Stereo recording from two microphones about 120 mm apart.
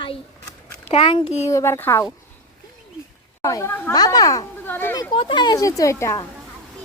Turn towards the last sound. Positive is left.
turn(degrees=25)  # may be behind; listen again after turning